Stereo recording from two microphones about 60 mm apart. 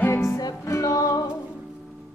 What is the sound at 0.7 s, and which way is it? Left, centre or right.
Music, left.